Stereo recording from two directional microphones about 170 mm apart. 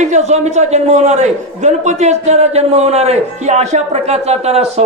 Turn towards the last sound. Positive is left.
turn(degrees=-40)  # may be behind; listen again after turning